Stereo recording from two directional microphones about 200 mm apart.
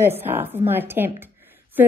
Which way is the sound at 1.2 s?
10° right (ahead or behind).